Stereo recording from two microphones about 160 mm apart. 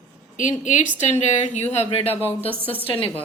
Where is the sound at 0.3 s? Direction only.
50° left (ahead or behind); by 3.2 s 35° left (ahead or behind).